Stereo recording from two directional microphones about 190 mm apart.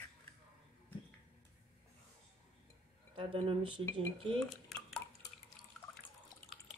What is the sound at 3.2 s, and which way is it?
Speech, 25° right (ahead or behind).